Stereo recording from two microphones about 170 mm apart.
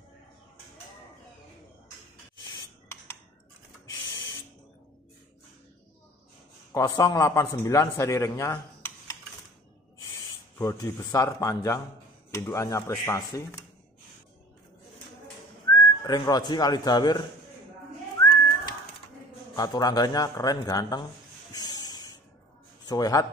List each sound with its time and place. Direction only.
2.5 s rub: 15° left (ahead or behind)
3.8 s rodents: 20° left (ahead or behind)
6.7 s a man's voice: 20° left (ahead or behind)
10.6 s speech: 15° left (ahead or behind)
15.7 s speech: 25° left (ahead or behind)
19.5 s a man's voice: 25° left (ahead or behind)
21.5 s spray: 25° left (ahead or behind)
22.8 s a man's voice: 25° left (ahead or behind)